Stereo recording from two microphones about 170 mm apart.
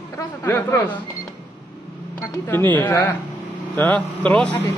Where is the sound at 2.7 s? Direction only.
15° left (ahead or behind).